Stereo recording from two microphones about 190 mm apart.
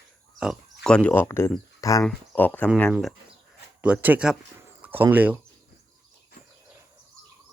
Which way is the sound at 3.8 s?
10° right (ahead or behind).